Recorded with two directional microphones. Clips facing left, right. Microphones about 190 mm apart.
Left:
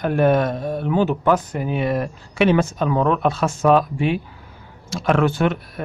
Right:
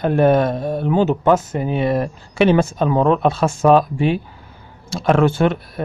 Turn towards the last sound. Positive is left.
turn(degrees=-30)  # may be behind; listen again after turning